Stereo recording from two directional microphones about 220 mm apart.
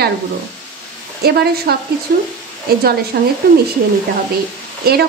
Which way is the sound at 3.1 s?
45° right (ahead or behind).